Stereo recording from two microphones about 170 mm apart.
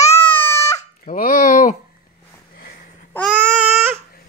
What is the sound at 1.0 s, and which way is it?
Fowl, 55° left (ahead or behind).